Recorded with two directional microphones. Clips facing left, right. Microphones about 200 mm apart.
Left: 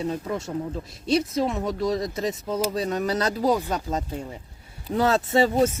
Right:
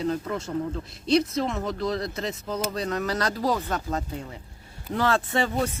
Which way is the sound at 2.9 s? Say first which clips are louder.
Left 2 dB; 20° left (ahead or behind).